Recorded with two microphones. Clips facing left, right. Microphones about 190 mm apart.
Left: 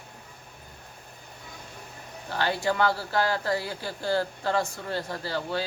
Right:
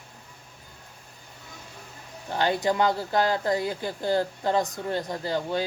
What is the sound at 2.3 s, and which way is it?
Speech, 20° right (ahead or behind).